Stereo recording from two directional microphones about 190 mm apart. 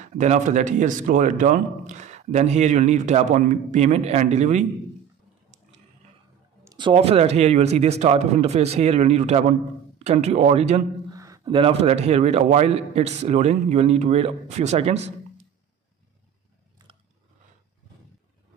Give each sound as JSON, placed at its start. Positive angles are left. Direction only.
{"t": 0.0, "sound": "a man's voice", "side_deg": -40}
{"t": 6.6, "sound": "a man's voice", "side_deg": -20}
{"t": 11.1, "sound": "a man's voice", "side_deg": -15}